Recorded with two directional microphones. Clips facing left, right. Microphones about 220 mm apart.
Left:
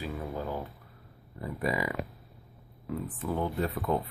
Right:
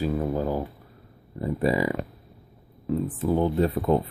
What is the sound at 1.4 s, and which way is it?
Speech, 30° right (ahead or behind).